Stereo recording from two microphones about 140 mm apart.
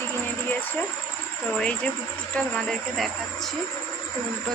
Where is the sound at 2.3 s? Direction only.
5° left (ahead or behind).